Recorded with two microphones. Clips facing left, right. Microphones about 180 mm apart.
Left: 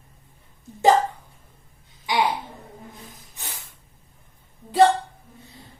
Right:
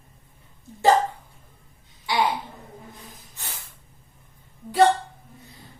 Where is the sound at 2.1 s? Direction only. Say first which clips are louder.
Left 1 dB; 15° left (ahead or behind).